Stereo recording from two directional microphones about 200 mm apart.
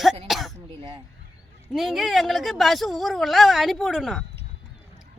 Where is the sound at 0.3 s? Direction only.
Centre (ahead or behind).